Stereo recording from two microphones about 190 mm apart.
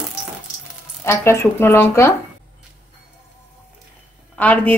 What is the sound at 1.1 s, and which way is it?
A woman's voice, 15° left (ahead or behind).